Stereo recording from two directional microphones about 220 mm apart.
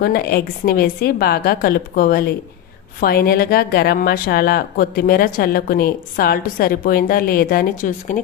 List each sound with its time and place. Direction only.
0.0 s a woman's voice: 45° left (ahead or behind)